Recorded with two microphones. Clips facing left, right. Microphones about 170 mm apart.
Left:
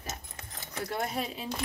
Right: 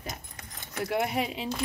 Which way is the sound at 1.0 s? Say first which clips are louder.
Right 4 dB; 75° right (ahead or behind).